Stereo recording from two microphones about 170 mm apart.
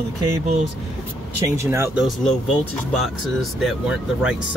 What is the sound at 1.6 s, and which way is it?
Speech, 15° right (ahead or behind).